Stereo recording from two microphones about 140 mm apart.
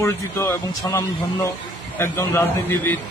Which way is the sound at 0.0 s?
20° left (ahead or behind).